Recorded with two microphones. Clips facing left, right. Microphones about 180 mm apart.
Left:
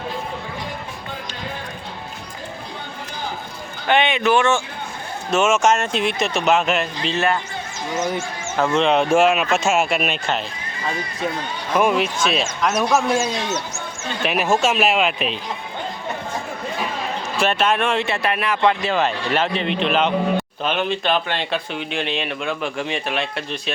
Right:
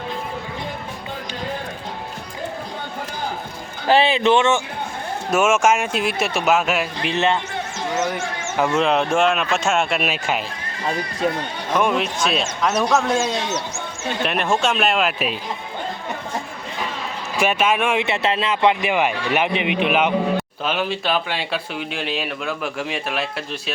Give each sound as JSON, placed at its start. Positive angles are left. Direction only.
{"t": 3.8, "sound": "speech", "side_deg": -35}
{"t": 5.3, "sound": "a man's voice", "side_deg": -10}
{"t": 7.9, "sound": "speech", "side_deg": -70}
{"t": 8.5, "sound": "speech", "side_deg": -10}
{"t": 8.8, "sound": "speech", "side_deg": 0}
{"t": 11.8, "sound": "speech", "side_deg": 5}
{"t": 12.9, "sound": "speech", "side_deg": 10}
{"t": 14.3, "sound": "speech", "side_deg": 5}
{"t": 17.3, "sound": "a man's voice", "side_deg": -10}
{"t": 18.0, "sound": "a man's voice", "side_deg": -20}